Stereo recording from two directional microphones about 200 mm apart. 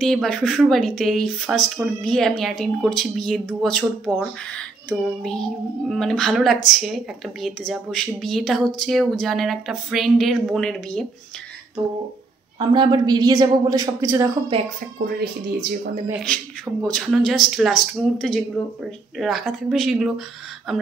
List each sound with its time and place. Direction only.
0.0 s speech: centre (ahead or behind)
12.5 s a woman's voice: 25° right (ahead or behind)
16.8 s speech: centre (ahead or behind)